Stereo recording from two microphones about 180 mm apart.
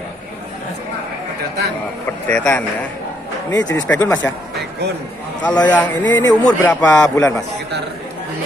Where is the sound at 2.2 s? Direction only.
10° left (ahead or behind).